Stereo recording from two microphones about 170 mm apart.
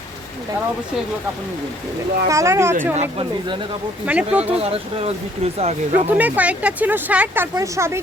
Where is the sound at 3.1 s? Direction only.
30° right (ahead or behind).